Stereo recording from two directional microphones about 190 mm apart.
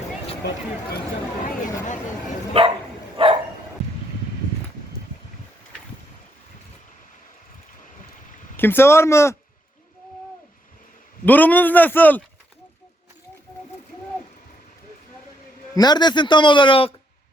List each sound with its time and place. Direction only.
2.5 s speech: 30° right (ahead or behind)
3.2 s dog: 30° right (ahead or behind)
8.5 s speech: 10° left (ahead or behind)
11.3 s speech: 10° left (ahead or behind)
15.7 s speech: 20° left (ahead or behind)